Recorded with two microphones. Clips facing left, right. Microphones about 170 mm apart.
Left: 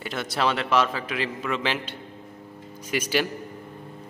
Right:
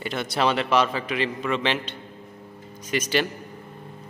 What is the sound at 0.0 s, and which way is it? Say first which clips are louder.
A man's voice: right 2 dB; centre (ahead or behind).